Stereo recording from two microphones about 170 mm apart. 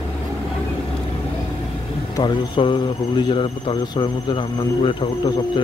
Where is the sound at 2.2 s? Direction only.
25° left (ahead or behind).